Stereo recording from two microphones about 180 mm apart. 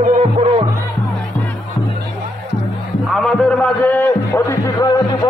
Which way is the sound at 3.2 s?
5° left (ahead or behind).